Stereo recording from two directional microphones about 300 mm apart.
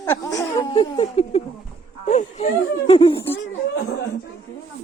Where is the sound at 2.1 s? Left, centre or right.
Left.